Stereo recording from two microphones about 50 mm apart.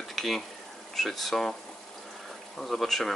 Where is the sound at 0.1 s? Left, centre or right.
Centre.